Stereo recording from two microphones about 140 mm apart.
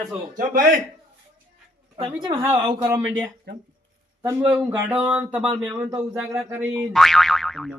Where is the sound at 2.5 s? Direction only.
35° right (ahead or behind).